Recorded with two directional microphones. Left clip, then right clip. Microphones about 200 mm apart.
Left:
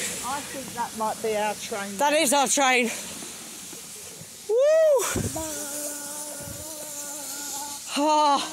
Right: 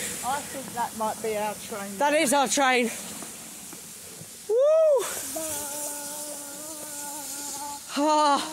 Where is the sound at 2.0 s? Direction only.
10° left (ahead or behind).